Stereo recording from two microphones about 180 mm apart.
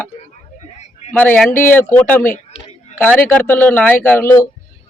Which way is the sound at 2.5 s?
40° left (ahead or behind).